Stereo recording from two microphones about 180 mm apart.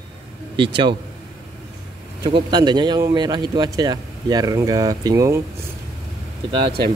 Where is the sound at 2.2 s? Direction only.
25° right (ahead or behind).